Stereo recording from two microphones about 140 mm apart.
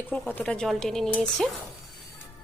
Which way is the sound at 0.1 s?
10° left (ahead or behind).